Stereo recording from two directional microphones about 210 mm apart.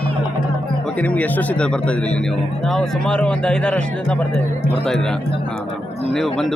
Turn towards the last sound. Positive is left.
turn(degrees=0)  # may be behind; listen again after turning